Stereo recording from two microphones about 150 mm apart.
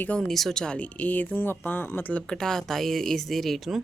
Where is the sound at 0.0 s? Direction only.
5° left (ahead or behind).